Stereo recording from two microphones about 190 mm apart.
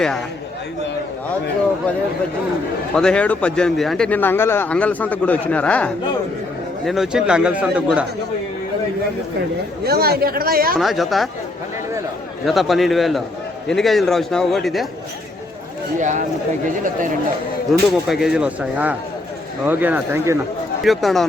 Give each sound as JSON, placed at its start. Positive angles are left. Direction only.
{"t": 2.9, "sound": "speech", "side_deg": 5}
{"t": 9.8, "sound": "speech", "side_deg": -55}
{"t": 10.8, "sound": "speech", "side_deg": 0}
{"t": 12.5, "sound": "speech", "side_deg": 0}
{"t": 16.0, "sound": "speech", "side_deg": -40}
{"t": 17.7, "sound": "speech", "side_deg": 0}
{"t": 20.8, "sound": "speech", "side_deg": 0}